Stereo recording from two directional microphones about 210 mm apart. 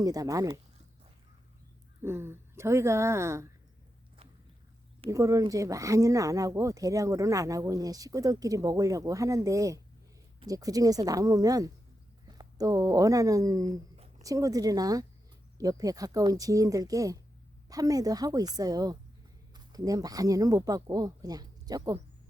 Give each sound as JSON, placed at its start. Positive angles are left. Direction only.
{"t": 0.0, "sound": "speech", "side_deg": -15}
{"t": 2.0, "sound": "speech", "side_deg": -10}
{"t": 5.1, "sound": "speech", "side_deg": -15}